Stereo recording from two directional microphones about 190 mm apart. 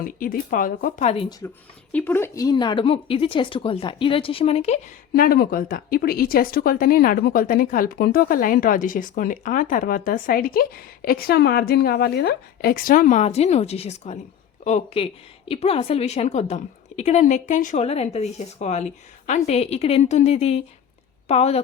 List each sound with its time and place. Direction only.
0.0 s speech: 45° left (ahead or behind)
1.2 s speech: 20° left (ahead or behind)
1.9 s speech: 10° left (ahead or behind); by 4.8 s 30° left (ahead or behind)
5.1 s a woman's voice: 50° left (ahead or behind); by 21.6 s 35° left (ahead or behind)